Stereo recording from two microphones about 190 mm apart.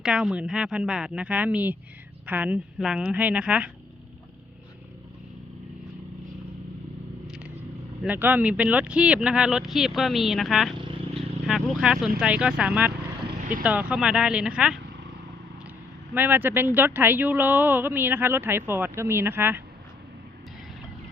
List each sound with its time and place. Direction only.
0.0 s speech: 5° right (ahead or behind)
7.3 s vehicle: 5° right (ahead or behind)
8.0 s speech: 10° right (ahead or behind)
10.8 s vehicle: 25° right (ahead or behind)
11.4 s speech: 5° right (ahead or behind)
16.1 s speech: 10° right (ahead or behind)